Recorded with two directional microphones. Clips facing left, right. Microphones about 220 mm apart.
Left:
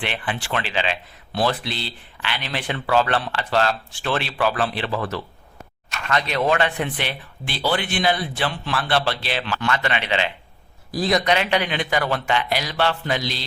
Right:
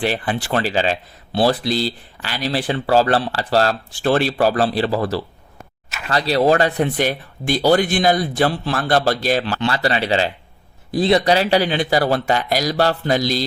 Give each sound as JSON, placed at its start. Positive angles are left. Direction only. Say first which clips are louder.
{"t": 0.0, "sound": "speech", "louder": "right 7 dB", "side_deg": -40}